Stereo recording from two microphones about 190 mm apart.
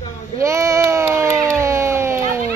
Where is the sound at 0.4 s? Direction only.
15° right (ahead or behind).